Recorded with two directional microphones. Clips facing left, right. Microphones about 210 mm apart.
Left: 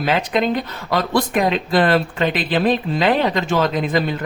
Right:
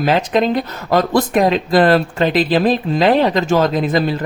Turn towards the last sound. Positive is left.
turn(degrees=-40)  # may be behind; listen again after turning